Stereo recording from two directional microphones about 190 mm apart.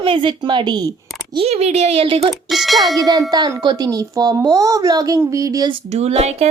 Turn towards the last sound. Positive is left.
turn(degrees=-35)  # may be behind; listen again after turning